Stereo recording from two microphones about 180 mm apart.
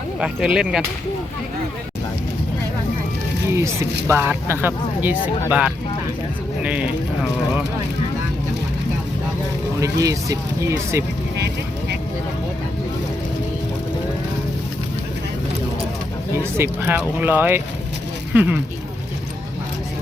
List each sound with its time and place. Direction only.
0.2 s speech: 5° right (ahead or behind)
3.5 s speech: 15° right (ahead or behind)
9.8 s speech: 20° right (ahead or behind)
11.3 s speech: 70° right (ahead or behind)
16.3 s speech: 15° right (ahead or behind)